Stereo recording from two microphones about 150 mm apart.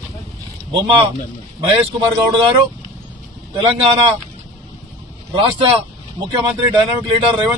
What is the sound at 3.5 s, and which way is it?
Speech, 35° right (ahead or behind).